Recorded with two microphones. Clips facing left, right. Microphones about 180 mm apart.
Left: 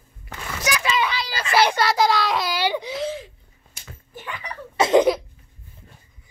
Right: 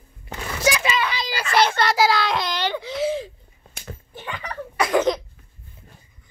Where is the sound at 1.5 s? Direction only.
10° left (ahead or behind).